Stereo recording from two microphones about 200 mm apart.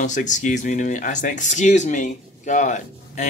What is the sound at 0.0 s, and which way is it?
Speech, 40° left (ahead or behind).